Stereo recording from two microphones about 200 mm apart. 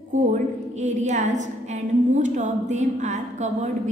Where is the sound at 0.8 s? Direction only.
35° right (ahead or behind).